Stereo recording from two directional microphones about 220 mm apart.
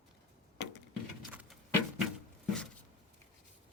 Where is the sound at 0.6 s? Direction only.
50° left (ahead or behind).